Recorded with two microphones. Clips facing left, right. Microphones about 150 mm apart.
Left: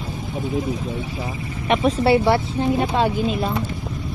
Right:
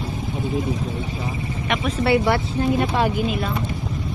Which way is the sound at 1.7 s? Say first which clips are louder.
Left 4 dB; 30° left (ahead or behind).